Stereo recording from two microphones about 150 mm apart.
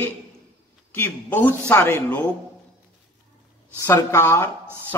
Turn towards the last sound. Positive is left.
turn(degrees=15)  # may be behind; listen again after turning